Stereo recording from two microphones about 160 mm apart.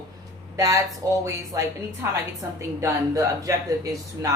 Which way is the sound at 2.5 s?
20° right (ahead or behind).